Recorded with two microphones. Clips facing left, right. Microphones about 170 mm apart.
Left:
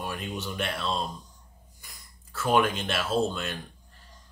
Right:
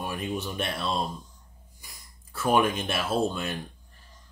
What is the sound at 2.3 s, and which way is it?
Speech, 15° right (ahead or behind).